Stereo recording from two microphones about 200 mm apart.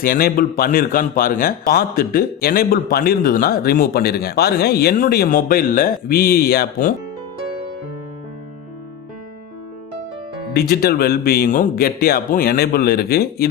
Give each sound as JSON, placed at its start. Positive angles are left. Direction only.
{"t": 0.0, "sound": "a man's voice", "side_deg": 45}
{"t": 10.5, "sound": "a man's voice", "side_deg": 50}